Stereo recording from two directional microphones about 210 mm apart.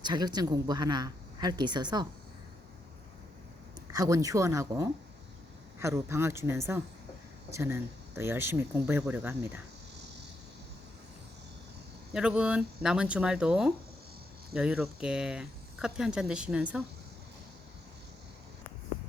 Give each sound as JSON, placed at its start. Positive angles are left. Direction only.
{"t": 0.0, "sound": "a woman's voice", "side_deg": -20}
{"t": 3.9, "sound": "speech", "side_deg": -15}
{"t": 12.1, "sound": "speech", "side_deg": -5}